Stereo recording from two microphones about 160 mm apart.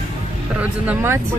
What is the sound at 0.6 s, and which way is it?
Speech, 10° right (ahead or behind).